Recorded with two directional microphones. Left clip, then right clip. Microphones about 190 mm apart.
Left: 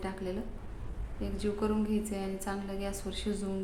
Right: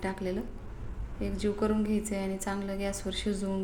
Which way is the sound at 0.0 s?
15° right (ahead or behind).